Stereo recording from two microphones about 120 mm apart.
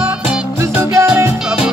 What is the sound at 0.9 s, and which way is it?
Music, 25° right (ahead or behind).